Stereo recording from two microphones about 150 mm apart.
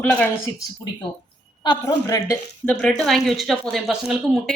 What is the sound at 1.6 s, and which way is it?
Speech, 25° left (ahead or behind).